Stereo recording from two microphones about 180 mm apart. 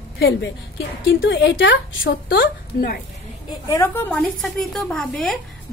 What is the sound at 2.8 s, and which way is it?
Speech, 55° left (ahead or behind).